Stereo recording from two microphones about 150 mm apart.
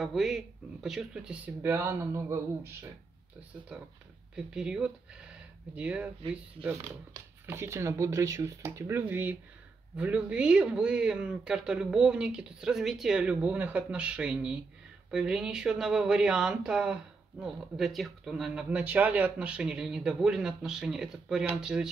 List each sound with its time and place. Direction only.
0.0 s speech: centre (ahead or behind); by 2.9 s 20° right (ahead or behind)
4.6 s speech: 5° right (ahead or behind)